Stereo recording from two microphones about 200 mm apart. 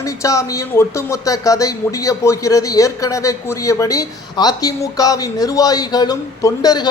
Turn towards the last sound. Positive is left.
turn(degrees=20)  # may be behind; listen again after turning